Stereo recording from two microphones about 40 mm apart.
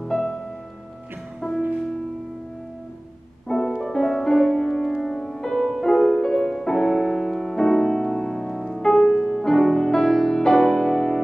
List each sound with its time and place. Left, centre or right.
0.0 s music: centre
1.4 s music: centre
3.4 s music: centre